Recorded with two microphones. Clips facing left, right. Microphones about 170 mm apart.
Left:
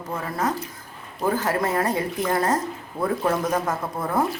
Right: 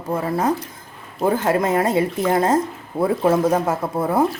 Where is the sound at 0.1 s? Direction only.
30° right (ahead or behind).